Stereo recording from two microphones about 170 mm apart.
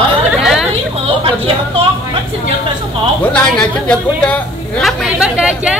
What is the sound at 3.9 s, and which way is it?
Speech, 5° left (ahead or behind).